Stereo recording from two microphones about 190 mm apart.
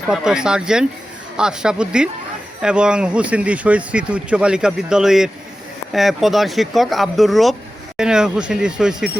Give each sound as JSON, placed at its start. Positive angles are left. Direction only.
{"t": 0.1, "sound": "speech", "side_deg": -5}